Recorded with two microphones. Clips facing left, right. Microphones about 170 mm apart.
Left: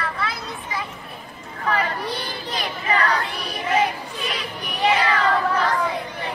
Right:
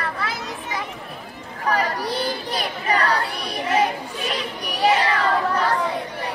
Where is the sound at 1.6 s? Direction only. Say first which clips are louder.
Right 1 dB; 40° right (ahead or behind).